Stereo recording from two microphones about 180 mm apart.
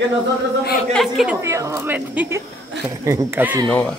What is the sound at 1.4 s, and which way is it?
A woman's voice, 15° right (ahead or behind).